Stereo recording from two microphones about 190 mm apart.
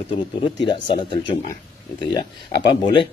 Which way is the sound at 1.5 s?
25° left (ahead or behind).